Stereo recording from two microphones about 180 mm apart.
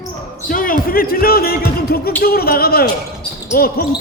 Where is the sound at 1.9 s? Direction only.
60° left (ahead or behind).